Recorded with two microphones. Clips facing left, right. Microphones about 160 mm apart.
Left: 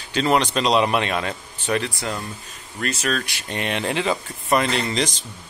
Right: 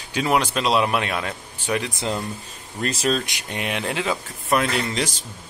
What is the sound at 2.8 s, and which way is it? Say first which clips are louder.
Speech: right 2 dB; 30° right (ahead or behind).